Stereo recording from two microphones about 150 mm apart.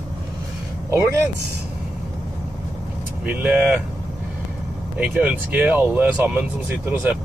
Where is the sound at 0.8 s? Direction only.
15° right (ahead or behind).